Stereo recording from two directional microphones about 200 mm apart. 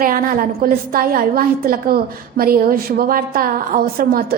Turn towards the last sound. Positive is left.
turn(degrees=-50)  # may be behind; listen again after turning